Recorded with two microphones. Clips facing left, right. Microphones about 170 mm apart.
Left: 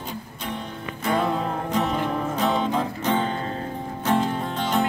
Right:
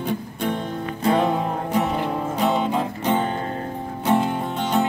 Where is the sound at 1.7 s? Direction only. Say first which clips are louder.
Right 1 dB; 10° right (ahead or behind).